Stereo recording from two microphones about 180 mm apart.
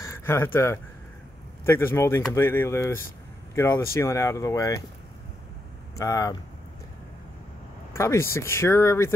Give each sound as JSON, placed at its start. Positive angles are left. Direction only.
{"t": 0.0, "sound": "speech", "side_deg": 15}
{"t": 5.9, "sound": "speech", "side_deg": 20}
{"t": 7.9, "sound": "speech", "side_deg": 15}